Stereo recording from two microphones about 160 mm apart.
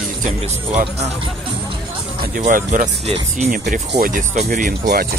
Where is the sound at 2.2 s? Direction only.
60° right (ahead or behind).